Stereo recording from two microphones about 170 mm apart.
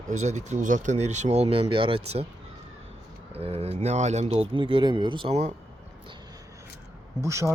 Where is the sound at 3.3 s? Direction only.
35° right (ahead or behind).